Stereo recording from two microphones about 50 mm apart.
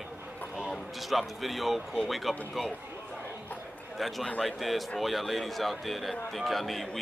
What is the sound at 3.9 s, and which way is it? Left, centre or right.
A man's voice, centre.